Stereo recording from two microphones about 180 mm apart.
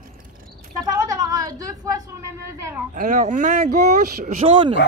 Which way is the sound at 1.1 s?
20° right (ahead or behind).